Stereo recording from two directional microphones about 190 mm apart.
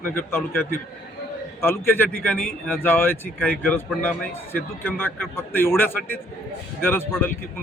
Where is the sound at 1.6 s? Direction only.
10° left (ahead or behind).